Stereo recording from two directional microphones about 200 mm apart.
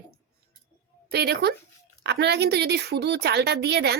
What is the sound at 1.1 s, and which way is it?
A woman's voice, 55° right (ahead or behind).